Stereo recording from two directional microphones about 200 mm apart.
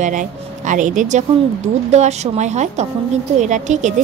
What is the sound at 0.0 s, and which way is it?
Speech, 40° right (ahead or behind).